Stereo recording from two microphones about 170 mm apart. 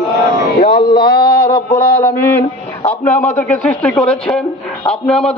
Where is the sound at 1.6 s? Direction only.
15° left (ahead or behind).